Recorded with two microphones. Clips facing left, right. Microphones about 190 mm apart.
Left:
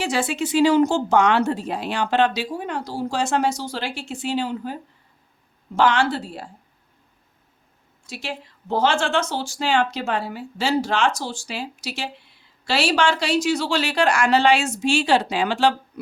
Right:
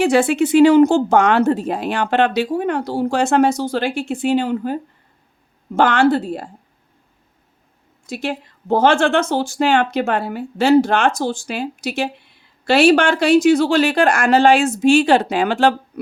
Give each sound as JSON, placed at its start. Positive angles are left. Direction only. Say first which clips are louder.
{"t": 0.0, "sound": "a woman's voice", "louder": "right 9 dB", "side_deg": -60}
{"t": 8.0, "sound": "speech", "louder": "right 8 dB", "side_deg": -50}